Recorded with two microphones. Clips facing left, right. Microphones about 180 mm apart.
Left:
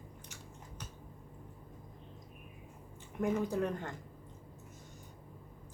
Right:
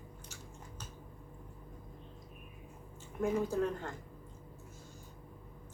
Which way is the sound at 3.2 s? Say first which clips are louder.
Even; 15° left (ahead or behind).